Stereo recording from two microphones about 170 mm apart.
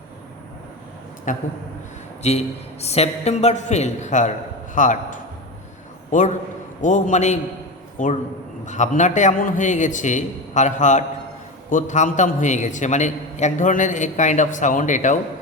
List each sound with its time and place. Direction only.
1.3 s a man's voice: 50° left (ahead or behind)